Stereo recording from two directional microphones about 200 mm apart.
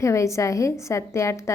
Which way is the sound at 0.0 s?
15° left (ahead or behind).